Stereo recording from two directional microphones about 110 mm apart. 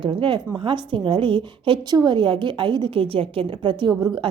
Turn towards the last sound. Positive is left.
turn(degrees=-45)  # may be behind; listen again after turning